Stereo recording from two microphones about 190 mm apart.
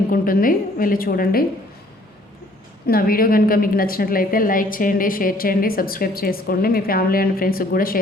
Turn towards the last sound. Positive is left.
turn(degrees=50)  # may be behind; listen again after turning